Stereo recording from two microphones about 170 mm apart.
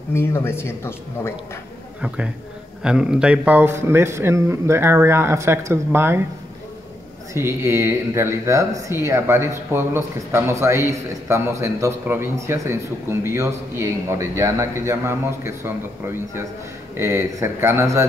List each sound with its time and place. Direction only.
0.1 s speech: 15° left (ahead or behind)
2.0 s a man's voice: 5° right (ahead or behind)
7.3 s speech: 15° right (ahead or behind)